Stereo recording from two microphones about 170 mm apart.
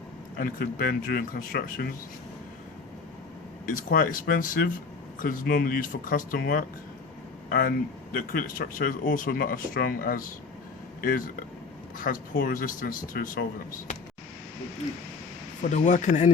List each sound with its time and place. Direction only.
0.3 s speech: 55° left (ahead or behind)
3.7 s speech: 55° left (ahead or behind)
8.1 s speech: 55° left (ahead or behind)
11.9 s speech: 55° left (ahead or behind)
15.6 s speech: 45° left (ahead or behind)